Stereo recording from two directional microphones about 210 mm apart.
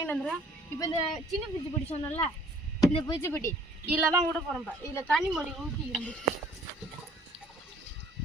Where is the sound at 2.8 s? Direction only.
15° left (ahead or behind).